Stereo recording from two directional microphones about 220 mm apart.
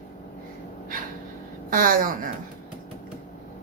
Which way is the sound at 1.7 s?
40° right (ahead or behind).